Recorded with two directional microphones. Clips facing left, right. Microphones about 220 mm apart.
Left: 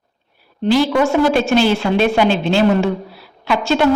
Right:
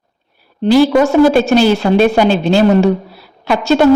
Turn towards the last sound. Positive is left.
turn(degrees=-40)  # may be behind; listen again after turning